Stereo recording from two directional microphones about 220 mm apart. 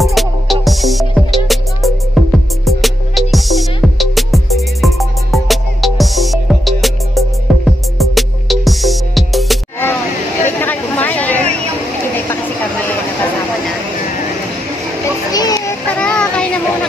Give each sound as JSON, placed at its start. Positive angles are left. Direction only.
{"t": 0.0, "sound": "music", "side_deg": 0}
{"t": 10.6, "sound": "chatter", "side_deg": 5}
{"t": 15.3, "sound": "a sound", "side_deg": 15}
{"t": 16.0, "sound": "child singing", "side_deg": 5}